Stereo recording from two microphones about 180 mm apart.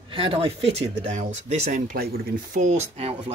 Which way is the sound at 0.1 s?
30° right (ahead or behind).